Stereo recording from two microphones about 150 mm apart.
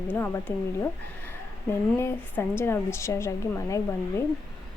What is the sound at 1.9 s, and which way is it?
Speech, 15° left (ahead or behind).